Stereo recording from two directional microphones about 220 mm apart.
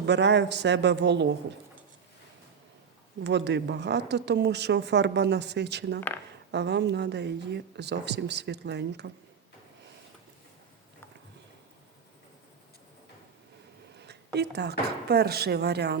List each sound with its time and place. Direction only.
0.0 s speech: 50° right (ahead or behind)
3.2 s speech: 50° right (ahead or behind)
14.0 s speech: 50° right (ahead or behind)